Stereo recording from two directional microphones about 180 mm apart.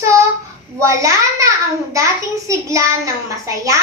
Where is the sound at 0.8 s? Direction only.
15° right (ahead or behind).